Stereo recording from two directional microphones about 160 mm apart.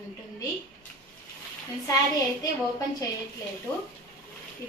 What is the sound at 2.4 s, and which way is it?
Speech, 25° left (ahead or behind).